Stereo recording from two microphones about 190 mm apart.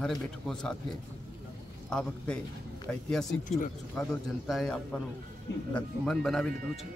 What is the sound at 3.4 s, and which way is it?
Speech, 40° left (ahead or behind).